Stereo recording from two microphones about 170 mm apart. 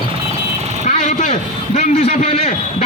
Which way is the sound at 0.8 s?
45° left (ahead or behind).